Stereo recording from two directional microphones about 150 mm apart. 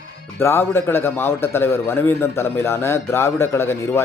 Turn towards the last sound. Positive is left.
turn(degrees=15)  # may be behind; listen again after turning